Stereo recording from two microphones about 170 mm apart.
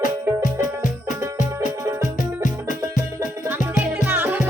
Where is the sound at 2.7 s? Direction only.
50° left (ahead or behind).